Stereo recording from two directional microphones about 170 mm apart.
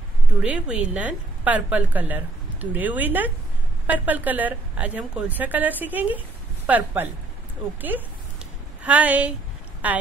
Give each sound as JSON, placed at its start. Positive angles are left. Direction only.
{"t": 0.4, "sound": "a woman's voice", "side_deg": -5}